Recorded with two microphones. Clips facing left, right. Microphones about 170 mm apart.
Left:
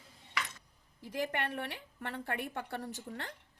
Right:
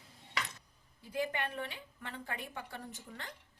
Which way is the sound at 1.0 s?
75° left (ahead or behind).